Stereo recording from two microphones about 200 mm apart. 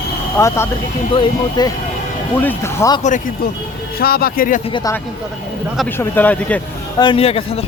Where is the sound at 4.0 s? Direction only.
50° left (ahead or behind).